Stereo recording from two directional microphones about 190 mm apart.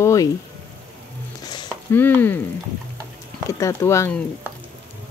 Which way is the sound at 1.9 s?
10° left (ahead or behind).